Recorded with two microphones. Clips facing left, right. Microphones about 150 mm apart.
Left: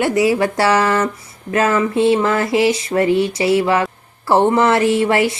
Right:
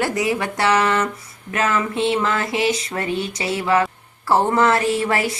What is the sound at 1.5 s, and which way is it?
Speech, 30° left (ahead or behind).